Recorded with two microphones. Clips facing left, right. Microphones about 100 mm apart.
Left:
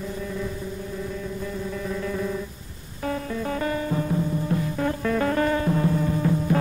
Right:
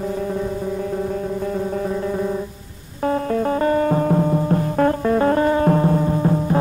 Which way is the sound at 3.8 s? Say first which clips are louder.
Right 8 dB; 60° right (ahead or behind).